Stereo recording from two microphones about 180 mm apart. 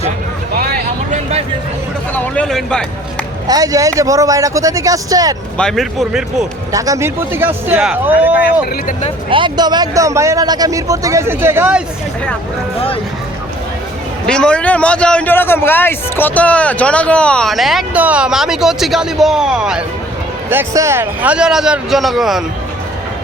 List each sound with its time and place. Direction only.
2.1 s a man's voice: 10° left (ahead or behind)
3.4 s speech: 20° right (ahead or behind)
5.5 s a man's voice: 5° left (ahead or behind)
6.7 s a man's voice: 20° right (ahead or behind)
8.7 s speech: 45° left (ahead or behind)
9.3 s a man's voice: 25° right (ahead or behind)
14.3 s a man's voice: 5° left (ahead or behind)
20.5 s a man's voice: 15° right (ahead or behind)